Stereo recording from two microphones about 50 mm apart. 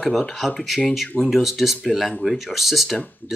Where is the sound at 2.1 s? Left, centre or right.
Left.